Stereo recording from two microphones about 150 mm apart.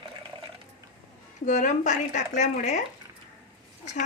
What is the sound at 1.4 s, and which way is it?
Speech, 55° left (ahead or behind).